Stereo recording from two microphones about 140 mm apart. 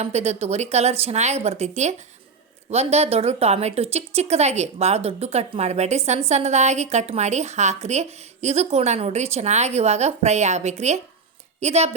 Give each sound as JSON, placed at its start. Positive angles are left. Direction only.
{"t": 0.0, "sound": "a woman's voice", "side_deg": -50}